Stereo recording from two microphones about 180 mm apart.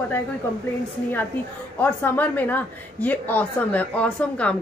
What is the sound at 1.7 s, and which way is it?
A woman's voice, 10° left (ahead or behind).